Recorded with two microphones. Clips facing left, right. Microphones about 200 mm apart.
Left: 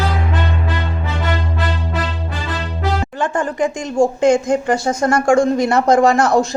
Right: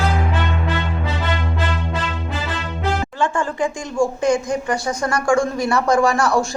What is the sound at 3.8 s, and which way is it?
A woman's voice, 20° left (ahead or behind).